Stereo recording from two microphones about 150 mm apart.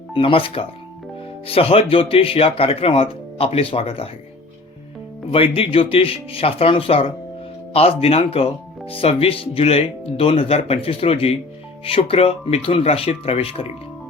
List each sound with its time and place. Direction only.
0.1 s speech: 35° left (ahead or behind)
5.3 s speech: 40° left (ahead or behind)